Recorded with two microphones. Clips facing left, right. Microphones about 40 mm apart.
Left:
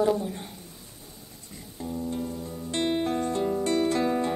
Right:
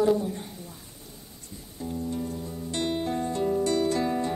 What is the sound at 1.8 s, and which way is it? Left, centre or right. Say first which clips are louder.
Music: even; left.